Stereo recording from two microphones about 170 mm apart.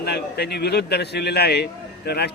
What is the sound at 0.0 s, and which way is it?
A man's voice, 70° left (ahead or behind).